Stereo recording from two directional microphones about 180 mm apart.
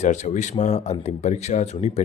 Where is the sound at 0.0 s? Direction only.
40° left (ahead or behind).